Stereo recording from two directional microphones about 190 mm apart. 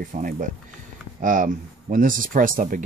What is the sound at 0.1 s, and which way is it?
Speech, 45° right (ahead or behind).